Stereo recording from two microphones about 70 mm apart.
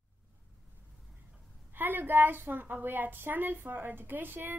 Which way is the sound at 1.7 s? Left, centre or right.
Right.